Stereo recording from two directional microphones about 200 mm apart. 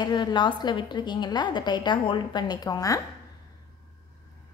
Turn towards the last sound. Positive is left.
turn(degrees=20)  # may be behind; listen again after turning